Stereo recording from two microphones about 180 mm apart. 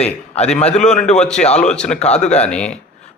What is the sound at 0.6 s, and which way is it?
A man's voice, 40° left (ahead or behind).